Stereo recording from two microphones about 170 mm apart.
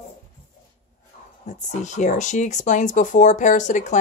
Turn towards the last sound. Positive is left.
turn(degrees=45)  # may be behind; listen again after turning